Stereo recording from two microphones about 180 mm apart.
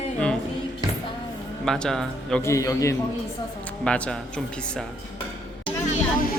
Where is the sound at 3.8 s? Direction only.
5° left (ahead or behind).